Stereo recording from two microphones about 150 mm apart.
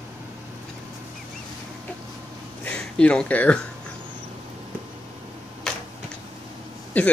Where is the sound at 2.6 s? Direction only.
5° left (ahead or behind).